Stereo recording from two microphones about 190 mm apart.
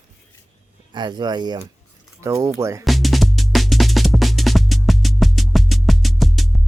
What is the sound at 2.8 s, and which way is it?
Music, centre (ahead or behind).